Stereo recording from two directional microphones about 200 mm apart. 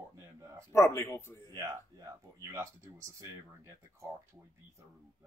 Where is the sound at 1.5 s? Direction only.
15° right (ahead or behind).